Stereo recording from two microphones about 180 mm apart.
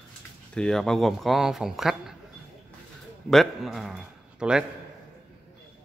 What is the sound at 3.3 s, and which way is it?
A man's voice, centre (ahead or behind).